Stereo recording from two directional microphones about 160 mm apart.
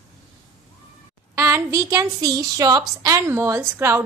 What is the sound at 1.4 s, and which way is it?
A woman's voice, 15° right (ahead or behind).